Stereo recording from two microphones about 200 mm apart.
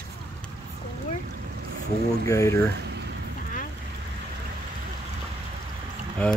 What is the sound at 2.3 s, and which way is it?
Speech, 15° left (ahead or behind).